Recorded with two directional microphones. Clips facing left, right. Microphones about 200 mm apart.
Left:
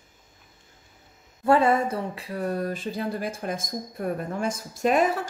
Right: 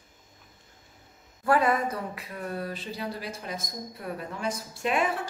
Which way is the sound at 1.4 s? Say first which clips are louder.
Left 4 dB; 25° left (ahead or behind).